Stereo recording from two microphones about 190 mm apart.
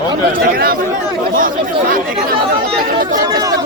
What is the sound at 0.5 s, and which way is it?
Speech, 50° right (ahead or behind).